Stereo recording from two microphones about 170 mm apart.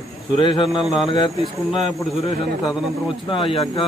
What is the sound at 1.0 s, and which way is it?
Speech, 30° left (ahead or behind).